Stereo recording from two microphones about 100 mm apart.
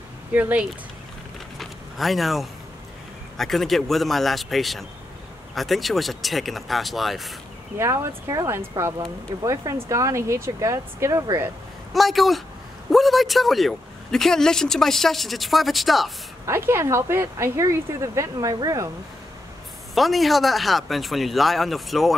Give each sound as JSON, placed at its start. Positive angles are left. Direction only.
{"t": 0.3, "sound": "speech", "side_deg": -15}
{"t": 1.6, "sound": "vehicle", "side_deg": 0}
{"t": 3.3, "sound": "speech", "side_deg": 0}
{"t": 7.8, "sound": "speech", "side_deg": -30}
{"t": 11.9, "sound": "speech", "side_deg": 0}
{"t": 16.4, "sound": "speech", "side_deg": -25}
{"t": 19.9, "sound": "speech", "side_deg": 0}